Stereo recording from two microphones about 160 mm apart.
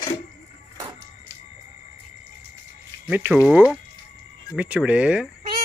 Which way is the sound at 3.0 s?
10° right (ahead or behind).